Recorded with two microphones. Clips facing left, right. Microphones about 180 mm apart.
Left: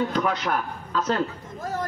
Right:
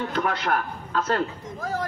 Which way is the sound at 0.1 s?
55° right (ahead or behind).